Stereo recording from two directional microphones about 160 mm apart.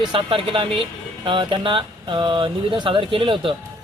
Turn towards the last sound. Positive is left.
turn(degrees=-35)  # may be behind; listen again after turning